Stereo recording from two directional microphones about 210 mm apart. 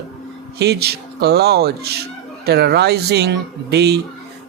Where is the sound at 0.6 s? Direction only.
50° right (ahead or behind).